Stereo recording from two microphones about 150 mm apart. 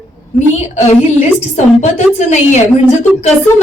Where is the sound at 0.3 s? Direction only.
50° left (ahead or behind).